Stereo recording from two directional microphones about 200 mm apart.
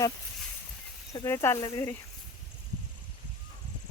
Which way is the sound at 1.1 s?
15° left (ahead or behind).